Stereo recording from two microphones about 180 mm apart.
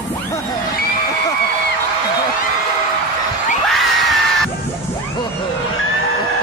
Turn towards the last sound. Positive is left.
turn(degrees=0)  # may be behind; listen again after turning